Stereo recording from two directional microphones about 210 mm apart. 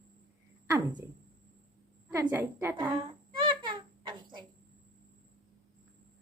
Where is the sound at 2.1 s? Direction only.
10° right (ahead or behind).